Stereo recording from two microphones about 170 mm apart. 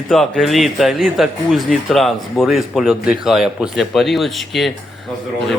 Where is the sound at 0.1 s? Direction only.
Centre (ahead or behind).